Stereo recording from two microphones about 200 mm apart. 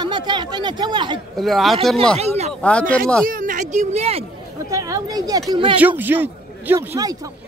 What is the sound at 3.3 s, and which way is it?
Speech, 45° right (ahead or behind).